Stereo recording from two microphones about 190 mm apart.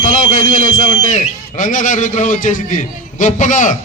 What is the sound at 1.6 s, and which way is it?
A man's voice, 45° left (ahead or behind).